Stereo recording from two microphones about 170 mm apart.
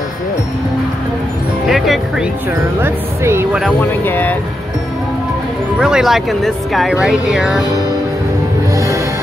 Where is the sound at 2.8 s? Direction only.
15° right (ahead or behind).